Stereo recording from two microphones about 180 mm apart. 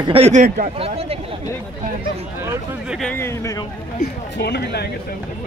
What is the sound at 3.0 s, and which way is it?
Speech, 10° left (ahead or behind).